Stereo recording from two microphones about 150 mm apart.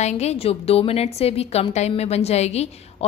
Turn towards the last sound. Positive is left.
turn(degrees=45)  # may be behind; listen again after turning